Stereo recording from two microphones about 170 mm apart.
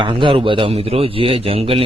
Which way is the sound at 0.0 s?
30° right (ahead or behind).